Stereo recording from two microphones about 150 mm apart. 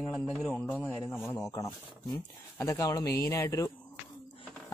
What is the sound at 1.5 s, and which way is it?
A man's voice, 20° left (ahead or behind).